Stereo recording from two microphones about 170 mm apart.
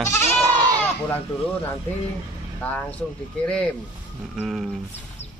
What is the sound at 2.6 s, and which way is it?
Speech, 10° left (ahead or behind).